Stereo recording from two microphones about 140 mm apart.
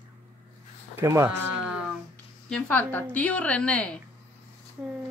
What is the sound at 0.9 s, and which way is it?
Speech, 20° right (ahead or behind).